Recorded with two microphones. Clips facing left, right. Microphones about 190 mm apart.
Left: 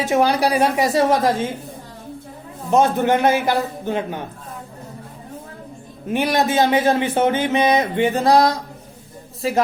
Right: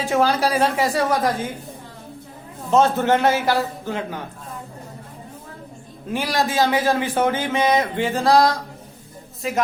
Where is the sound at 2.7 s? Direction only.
15° left (ahead or behind).